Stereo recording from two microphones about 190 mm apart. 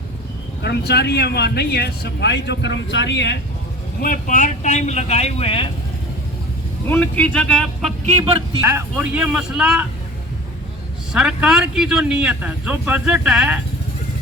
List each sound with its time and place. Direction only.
0.6 s speech: 60° left (ahead or behind)
4.0 s speech: 45° left (ahead or behind); by 5.7 s 30° left (ahead or behind)
6.8 s speech: 10° left (ahead or behind)
8.6 s speech: 10° right (ahead or behind)
11.1 s speech: 5° right (ahead or behind)